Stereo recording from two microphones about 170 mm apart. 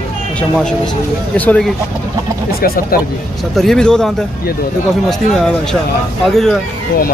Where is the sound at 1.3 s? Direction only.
5° left (ahead or behind).